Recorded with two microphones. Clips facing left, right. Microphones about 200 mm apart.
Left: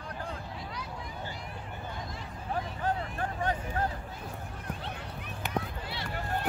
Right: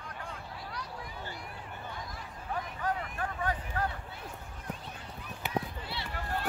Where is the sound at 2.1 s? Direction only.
30° left (ahead or behind).